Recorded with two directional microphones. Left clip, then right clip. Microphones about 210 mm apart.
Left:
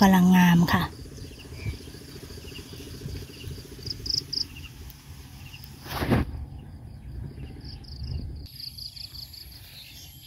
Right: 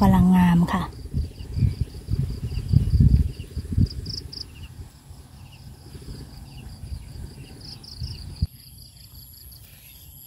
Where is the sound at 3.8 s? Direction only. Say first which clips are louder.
Left 9 dB; 40° right (ahead or behind).